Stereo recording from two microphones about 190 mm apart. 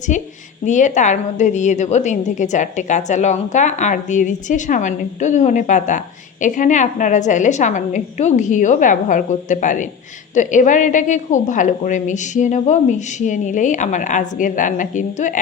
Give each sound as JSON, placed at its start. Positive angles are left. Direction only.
{"t": 0.6, "sound": "a woman's voice", "side_deg": 40}